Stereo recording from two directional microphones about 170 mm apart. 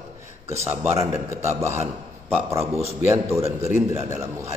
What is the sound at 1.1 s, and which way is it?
Speech, 15° right (ahead or behind).